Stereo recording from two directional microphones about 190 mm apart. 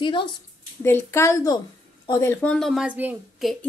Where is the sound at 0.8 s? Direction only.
15° left (ahead or behind).